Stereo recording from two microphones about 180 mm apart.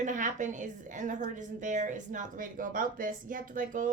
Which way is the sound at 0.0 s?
45° right (ahead or behind).